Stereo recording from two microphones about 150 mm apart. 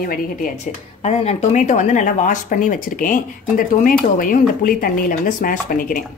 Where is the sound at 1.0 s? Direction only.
45° left (ahead or behind); by 6.0 s 70° left (ahead or behind).